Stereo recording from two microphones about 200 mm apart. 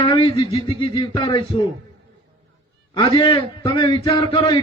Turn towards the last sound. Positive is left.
turn(degrees=20)  # may be behind; listen again after turning